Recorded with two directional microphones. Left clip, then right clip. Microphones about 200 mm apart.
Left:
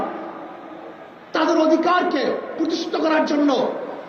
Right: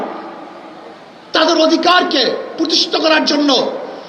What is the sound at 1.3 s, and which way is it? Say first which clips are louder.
A woman's voice: right 6 dB; 35° right (ahead or behind).